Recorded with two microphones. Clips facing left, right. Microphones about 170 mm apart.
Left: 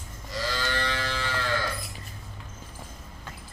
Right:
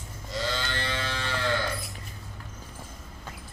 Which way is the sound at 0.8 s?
20° right (ahead or behind).